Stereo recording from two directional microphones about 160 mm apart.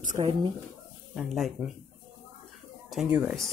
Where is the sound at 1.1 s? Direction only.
Centre (ahead or behind).